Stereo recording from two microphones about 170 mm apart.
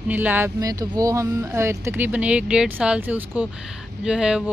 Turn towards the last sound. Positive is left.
turn(degrees=-5)  # may be behind; listen again after turning